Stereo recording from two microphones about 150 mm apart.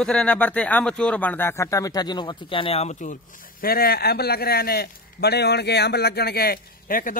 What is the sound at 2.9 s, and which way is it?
Speech, 60° left (ahead or behind).